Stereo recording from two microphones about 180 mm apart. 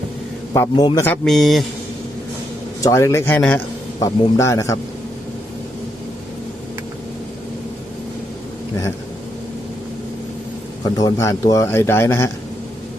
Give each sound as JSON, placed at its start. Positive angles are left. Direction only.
{"t": 0.5, "sound": "a man's voice", "side_deg": 15}
{"t": 2.8, "sound": "a man's voice", "side_deg": 15}
{"t": 10.8, "sound": "a man's voice", "side_deg": 20}